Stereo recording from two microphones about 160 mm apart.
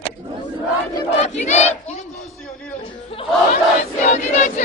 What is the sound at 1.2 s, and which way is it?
Battle cry, 45° left (ahead or behind).